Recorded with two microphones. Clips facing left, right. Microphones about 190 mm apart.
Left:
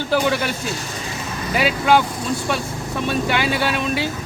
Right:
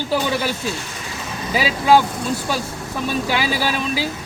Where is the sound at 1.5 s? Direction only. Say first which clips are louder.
Right 1 dB; centre (ahead or behind).